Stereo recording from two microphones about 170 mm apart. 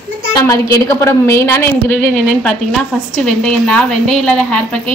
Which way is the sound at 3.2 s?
5° left (ahead or behind).